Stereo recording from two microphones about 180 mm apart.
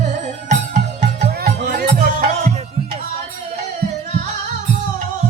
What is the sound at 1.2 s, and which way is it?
Music, 60° right (ahead or behind).